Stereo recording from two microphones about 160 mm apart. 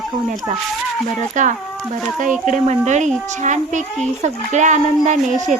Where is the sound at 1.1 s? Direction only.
50° right (ahead or behind).